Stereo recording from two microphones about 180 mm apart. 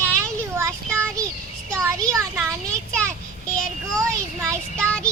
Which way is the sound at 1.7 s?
15° right (ahead or behind).